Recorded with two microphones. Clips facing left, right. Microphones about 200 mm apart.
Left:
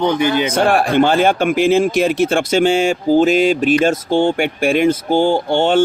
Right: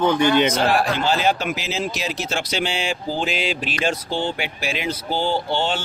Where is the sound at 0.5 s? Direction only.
55° left (ahead or behind).